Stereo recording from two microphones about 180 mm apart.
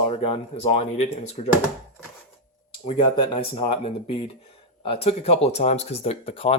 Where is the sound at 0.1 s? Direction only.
35° left (ahead or behind).